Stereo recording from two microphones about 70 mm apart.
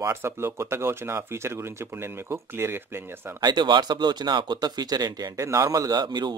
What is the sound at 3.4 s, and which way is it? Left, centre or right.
Speech, right.